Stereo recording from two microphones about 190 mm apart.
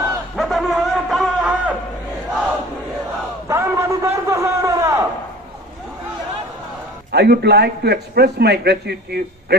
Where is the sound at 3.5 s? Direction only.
15° right (ahead or behind).